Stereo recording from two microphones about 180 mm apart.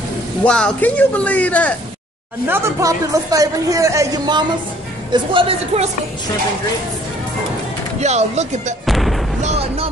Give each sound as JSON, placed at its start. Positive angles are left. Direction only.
{"t": 0.4, "sound": "speech", "side_deg": 5}
{"t": 2.4, "sound": "speech", "side_deg": -15}
{"t": 8.0, "sound": "speech", "side_deg": -40}
{"t": 8.8, "sound": "artillery fire", "side_deg": 0}
{"t": 9.4, "sound": "music", "side_deg": -35}